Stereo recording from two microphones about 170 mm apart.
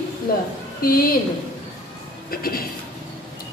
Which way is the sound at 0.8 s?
60° left (ahead or behind).